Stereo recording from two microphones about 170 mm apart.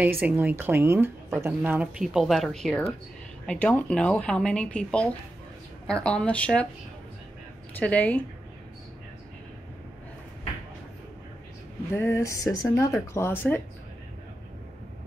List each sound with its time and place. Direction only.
0.0 s speech: 10° right (ahead or behind); by 6.7 s 5° left (ahead or behind)
7.8 s speech: 10° left (ahead or behind)
11.9 s speech: 15° left (ahead or behind)